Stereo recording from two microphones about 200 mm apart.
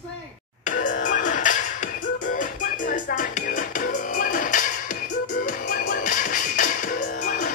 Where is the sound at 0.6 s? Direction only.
40° left (ahead or behind).